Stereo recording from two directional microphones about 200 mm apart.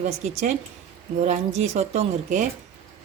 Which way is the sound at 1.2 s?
35° right (ahead or behind).